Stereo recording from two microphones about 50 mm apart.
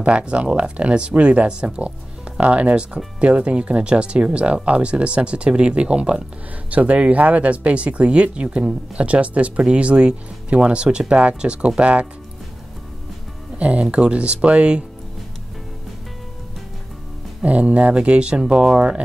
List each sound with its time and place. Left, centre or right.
0.0 s speech: right
6.7 s speech: right
13.6 s speech: right
17.4 s speech: right